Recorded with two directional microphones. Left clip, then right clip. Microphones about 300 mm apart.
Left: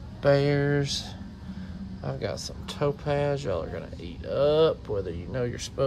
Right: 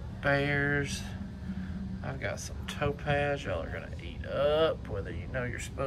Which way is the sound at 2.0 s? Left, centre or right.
Centre.